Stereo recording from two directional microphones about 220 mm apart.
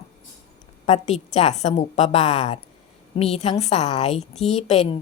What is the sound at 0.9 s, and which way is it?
A woman's voice, 30° left (ahead or behind).